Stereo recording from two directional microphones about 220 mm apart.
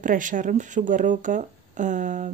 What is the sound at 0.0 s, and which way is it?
Speech, 35° right (ahead or behind).